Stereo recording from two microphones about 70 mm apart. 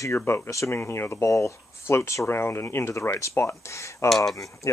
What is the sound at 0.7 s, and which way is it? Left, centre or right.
Speech, left.